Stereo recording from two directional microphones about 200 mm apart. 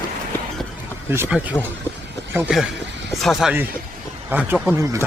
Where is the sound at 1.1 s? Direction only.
10° right (ahead or behind).